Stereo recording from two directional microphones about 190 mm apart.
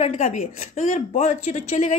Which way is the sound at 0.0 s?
35° left (ahead or behind).